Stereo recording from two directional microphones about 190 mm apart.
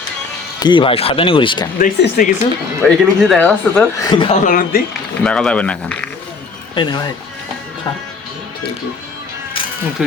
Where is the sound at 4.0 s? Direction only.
25° left (ahead or behind).